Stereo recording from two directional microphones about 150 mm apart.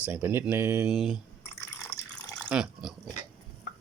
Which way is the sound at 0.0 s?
15° right (ahead or behind).